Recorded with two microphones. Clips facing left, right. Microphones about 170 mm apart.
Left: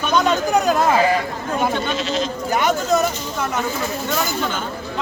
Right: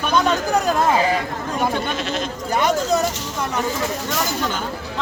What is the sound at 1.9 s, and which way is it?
Speech, 55° right (ahead or behind).